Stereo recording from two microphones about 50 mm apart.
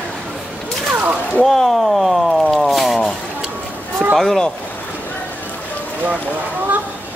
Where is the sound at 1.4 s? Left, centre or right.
Centre.